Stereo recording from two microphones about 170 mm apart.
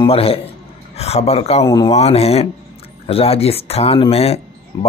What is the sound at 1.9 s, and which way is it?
Speech, 35° left (ahead or behind).